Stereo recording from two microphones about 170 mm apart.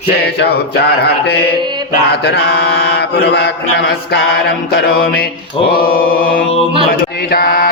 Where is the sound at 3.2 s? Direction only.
75° left (ahead or behind).